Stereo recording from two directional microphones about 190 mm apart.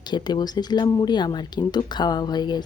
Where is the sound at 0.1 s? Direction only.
20° left (ahead or behind).